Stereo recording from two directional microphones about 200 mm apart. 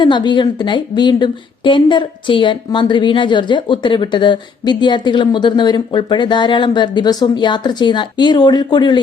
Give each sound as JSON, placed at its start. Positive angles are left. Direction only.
{"t": 0.0, "sound": "a woman's voice", "side_deg": 20}